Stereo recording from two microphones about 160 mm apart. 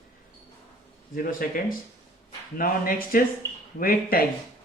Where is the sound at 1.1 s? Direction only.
60° left (ahead or behind).